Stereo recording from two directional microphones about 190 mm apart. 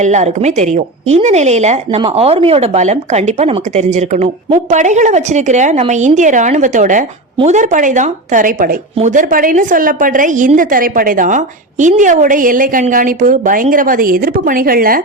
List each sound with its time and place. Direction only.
0.0 s a woman's voice: 40° right (ahead or behind)